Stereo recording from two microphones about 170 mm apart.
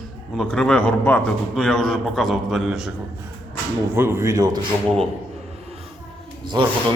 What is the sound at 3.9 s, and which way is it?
Speech, 15° right (ahead or behind).